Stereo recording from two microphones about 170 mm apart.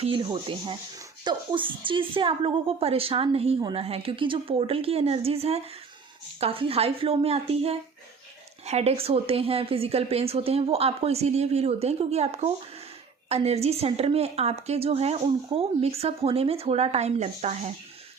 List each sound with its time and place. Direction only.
0.0 s speech: 30° right (ahead or behind)